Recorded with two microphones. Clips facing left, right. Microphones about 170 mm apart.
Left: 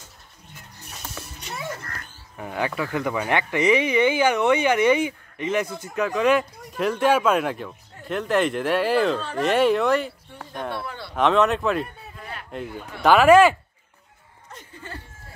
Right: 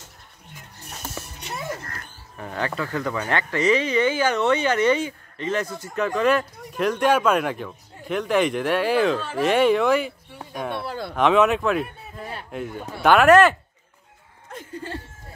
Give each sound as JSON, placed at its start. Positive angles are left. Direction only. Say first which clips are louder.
{"t": 2.3, "sound": "speech", "louder": "left 1 dB", "side_deg": 10}
{"t": 10.4, "sound": "a sound", "louder": "right 1 dB", "side_deg": -10}
{"t": 10.9, "sound": "speech", "louder": "right 6 dB", "side_deg": -45}
{"t": 11.1, "sound": "a man's voice", "louder": "right 1 dB", "side_deg": -5}